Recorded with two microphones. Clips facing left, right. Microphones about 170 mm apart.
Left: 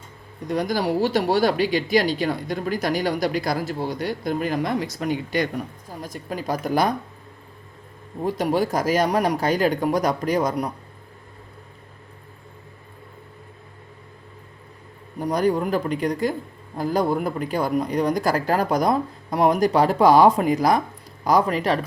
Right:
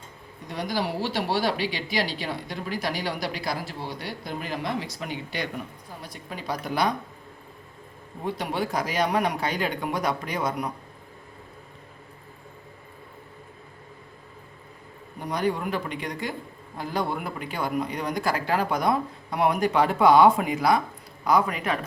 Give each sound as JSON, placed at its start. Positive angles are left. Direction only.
{"t": 0.4, "sound": "speech", "side_deg": 45}
{"t": 8.2, "sound": "a man's voice", "side_deg": 40}
{"t": 15.2, "sound": "a man's voice", "side_deg": 40}